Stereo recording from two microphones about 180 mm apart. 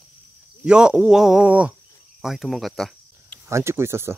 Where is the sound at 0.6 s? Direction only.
5° right (ahead or behind).